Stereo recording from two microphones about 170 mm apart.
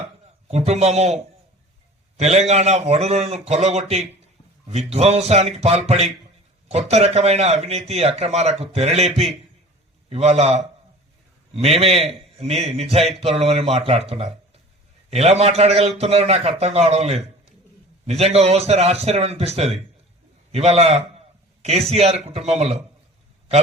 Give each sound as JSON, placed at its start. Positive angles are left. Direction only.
{"t": 0.4, "sound": "a man's voice", "side_deg": -40}